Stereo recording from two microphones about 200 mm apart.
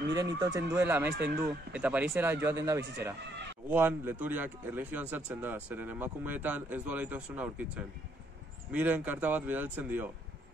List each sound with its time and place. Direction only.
0.1 s speech: 20° right (ahead or behind)
1.1 s a man's voice: 55° right (ahead or behind)
1.7 s speech: 5° right (ahead or behind)